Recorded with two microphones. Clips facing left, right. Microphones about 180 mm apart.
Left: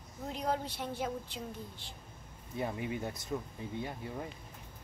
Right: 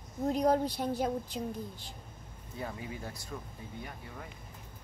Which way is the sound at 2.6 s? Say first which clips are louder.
Left 4 dB; 20° left (ahead or behind).